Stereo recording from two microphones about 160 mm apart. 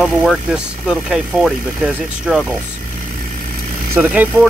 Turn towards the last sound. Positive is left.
turn(degrees=-10)  # may be behind; listen again after turning